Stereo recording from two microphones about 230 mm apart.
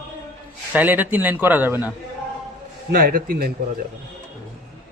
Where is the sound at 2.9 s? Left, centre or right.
Right.